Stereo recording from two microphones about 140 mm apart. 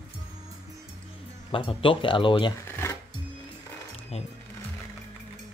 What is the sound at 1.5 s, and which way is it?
Speech, 40° left (ahead or behind).